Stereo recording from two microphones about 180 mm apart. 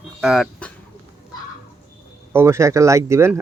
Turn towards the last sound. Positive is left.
turn(degrees=-15)  # may be behind; listen again after turning